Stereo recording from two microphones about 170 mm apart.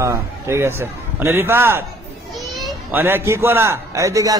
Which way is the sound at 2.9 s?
15° right (ahead or behind).